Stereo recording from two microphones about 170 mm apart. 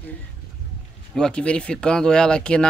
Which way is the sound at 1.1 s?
5° left (ahead or behind).